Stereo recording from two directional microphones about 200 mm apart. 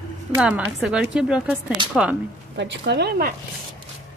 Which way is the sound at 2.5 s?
60° right (ahead or behind).